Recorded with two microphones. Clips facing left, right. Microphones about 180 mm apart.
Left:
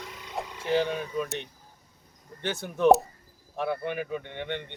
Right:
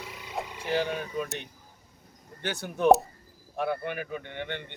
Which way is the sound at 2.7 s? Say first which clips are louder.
Left 1 dB; centre (ahead or behind).